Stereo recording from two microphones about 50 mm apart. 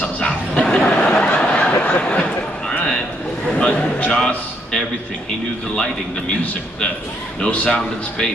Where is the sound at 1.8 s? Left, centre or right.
Left.